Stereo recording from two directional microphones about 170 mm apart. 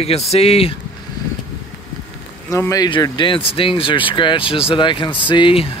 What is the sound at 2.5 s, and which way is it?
Speech, 20° left (ahead or behind).